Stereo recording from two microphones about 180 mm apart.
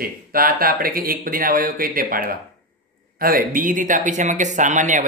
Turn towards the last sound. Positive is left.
turn(degrees=-45)  # may be behind; listen again after turning